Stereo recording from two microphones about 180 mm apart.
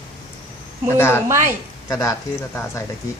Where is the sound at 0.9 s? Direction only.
15° left (ahead or behind).